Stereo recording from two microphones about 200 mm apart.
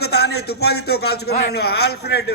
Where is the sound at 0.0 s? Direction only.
55° left (ahead or behind).